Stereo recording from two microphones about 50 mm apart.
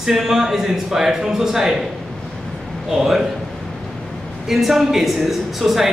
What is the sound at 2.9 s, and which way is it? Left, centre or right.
Speech, centre.